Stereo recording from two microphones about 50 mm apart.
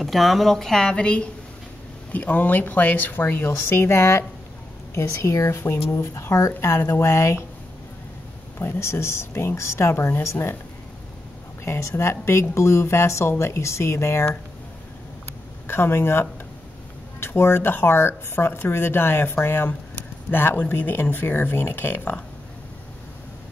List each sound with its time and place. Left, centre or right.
0.0 s speech: centre
0.9 s a woman's voice: left
2.1 s speech: left
3.6 s speech: left
4.9 s speech: left
5.9 s speech: left
8.5 s speech: left
11.6 s speech: left
15.6 s speech: left